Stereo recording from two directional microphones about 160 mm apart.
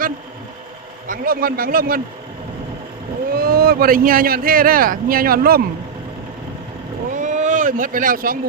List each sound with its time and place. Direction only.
1.0 s speech: 60° right (ahead or behind)
3.3 s speech: 70° right (ahead or behind)
7.1 s speech: 50° right (ahead or behind)